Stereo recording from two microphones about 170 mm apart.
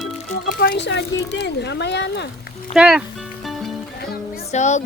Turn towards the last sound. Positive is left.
turn(degrees=45)  # may be behind; listen again after turning